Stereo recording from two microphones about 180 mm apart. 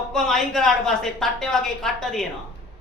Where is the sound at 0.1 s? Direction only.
Centre (ahead or behind).